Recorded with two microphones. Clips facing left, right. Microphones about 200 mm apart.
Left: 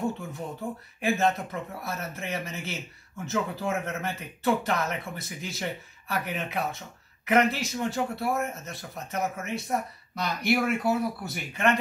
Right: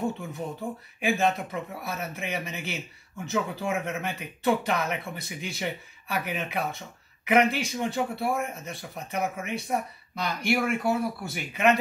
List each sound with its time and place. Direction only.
0.0 s speech: centre (ahead or behind)